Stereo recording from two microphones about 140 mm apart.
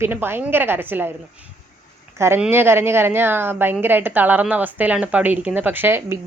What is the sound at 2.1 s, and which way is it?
A woman's voice, 20° right (ahead or behind).